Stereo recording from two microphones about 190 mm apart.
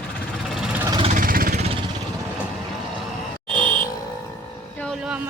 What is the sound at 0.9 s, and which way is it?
Vehicle, 25° right (ahead or behind).